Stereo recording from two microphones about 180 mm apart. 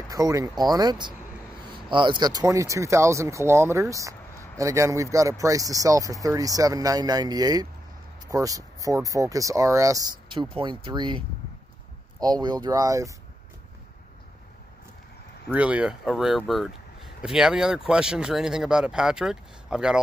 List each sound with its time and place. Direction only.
0.1 s speech: 20° right (ahead or behind)
15.5 s speech: 5° right (ahead or behind)